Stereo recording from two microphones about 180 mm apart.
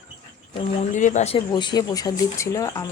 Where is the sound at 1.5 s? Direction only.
25° left (ahead or behind).